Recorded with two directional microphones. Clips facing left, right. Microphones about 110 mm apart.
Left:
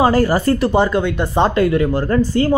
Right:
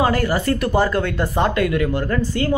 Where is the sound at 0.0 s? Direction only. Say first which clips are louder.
Left 5 dB; 35° left (ahead or behind).